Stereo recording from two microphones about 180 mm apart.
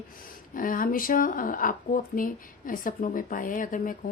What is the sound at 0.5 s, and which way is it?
Speech, 50° left (ahead or behind).